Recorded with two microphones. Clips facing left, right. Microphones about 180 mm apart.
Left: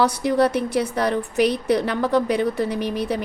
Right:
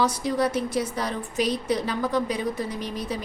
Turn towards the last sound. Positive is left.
turn(degrees=65)  # may be behind; listen again after turning